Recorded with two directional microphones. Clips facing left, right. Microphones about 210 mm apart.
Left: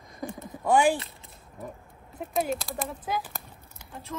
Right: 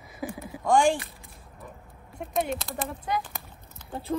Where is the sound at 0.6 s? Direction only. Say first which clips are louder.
Even; 5° left (ahead or behind).